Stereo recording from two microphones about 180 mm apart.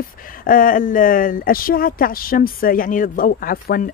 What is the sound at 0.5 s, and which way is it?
Speech, 50° left (ahead or behind).